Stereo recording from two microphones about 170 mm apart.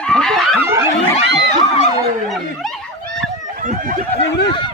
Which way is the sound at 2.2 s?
Centre (ahead or behind).